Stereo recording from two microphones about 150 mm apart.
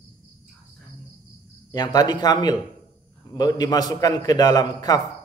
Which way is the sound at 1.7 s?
25° left (ahead or behind).